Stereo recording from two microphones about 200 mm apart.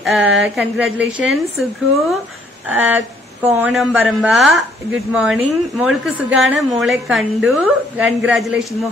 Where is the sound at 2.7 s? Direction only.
10° right (ahead or behind).